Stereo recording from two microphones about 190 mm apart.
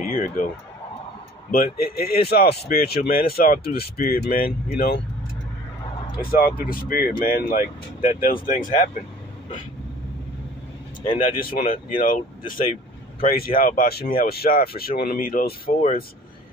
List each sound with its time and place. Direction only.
0.0 s a sound: 50° left (ahead or behind)
1.5 s speech: 50° left (ahead or behind)
6.3 s speech: 50° left (ahead or behind)
11.0 s speech: 45° left (ahead or behind)